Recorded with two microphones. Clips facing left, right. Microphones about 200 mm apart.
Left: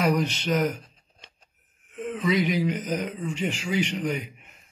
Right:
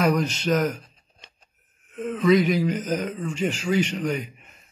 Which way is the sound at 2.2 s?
15° left (ahead or behind).